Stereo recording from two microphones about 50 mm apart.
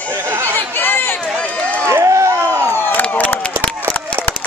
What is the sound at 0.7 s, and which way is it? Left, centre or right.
Chatter, left.